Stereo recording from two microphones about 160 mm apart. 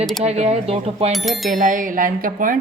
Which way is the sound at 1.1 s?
Centre (ahead or behind).